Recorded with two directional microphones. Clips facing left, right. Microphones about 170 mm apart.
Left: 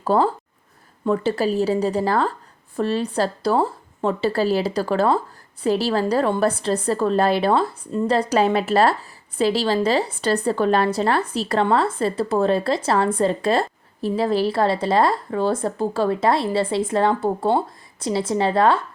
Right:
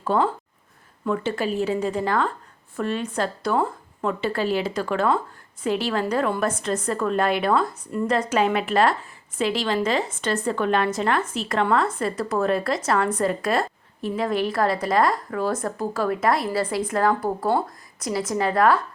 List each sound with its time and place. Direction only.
0.0 s a woman's voice: 35° left (ahead or behind)